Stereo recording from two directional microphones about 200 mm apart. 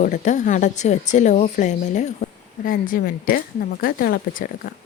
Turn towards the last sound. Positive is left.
turn(degrees=50)  # may be behind; listen again after turning